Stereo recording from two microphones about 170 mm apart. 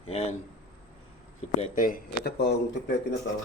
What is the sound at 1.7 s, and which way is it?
Speech, 55° left (ahead or behind).